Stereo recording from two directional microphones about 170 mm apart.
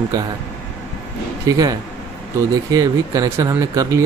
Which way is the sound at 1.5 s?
20° right (ahead or behind).